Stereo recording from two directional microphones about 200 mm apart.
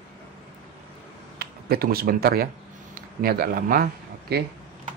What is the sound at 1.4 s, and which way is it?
Speech, 50° right (ahead or behind).